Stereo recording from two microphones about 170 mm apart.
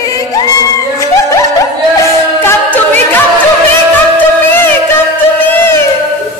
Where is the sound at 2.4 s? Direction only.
10° left (ahead or behind).